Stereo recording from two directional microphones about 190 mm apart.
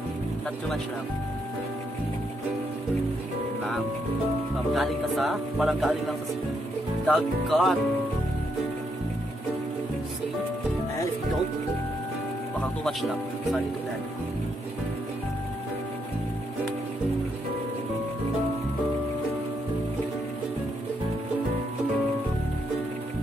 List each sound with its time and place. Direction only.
4.7 s speech: centre (ahead or behind)